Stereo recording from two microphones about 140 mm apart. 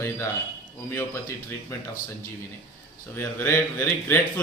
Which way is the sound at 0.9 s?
15° left (ahead or behind).